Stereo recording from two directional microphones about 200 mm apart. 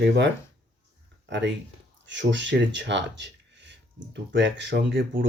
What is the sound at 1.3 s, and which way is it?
Speech, 65° right (ahead or behind).